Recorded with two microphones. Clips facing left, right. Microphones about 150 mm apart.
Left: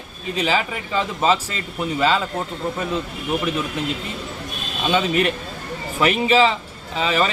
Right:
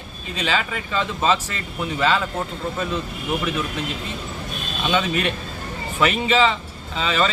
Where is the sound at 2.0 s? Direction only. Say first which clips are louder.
Left 1 dB; 15° left (ahead or behind).